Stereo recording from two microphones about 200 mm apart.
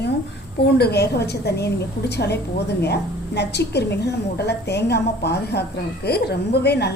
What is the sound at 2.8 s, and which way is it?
A woman's voice, 55° left (ahead or behind).